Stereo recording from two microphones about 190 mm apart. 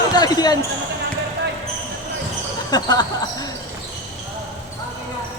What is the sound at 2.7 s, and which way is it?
Basketball bounce, 20° left (ahead or behind).